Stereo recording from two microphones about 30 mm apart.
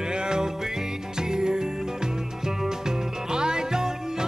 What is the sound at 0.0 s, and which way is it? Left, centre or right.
Music, right.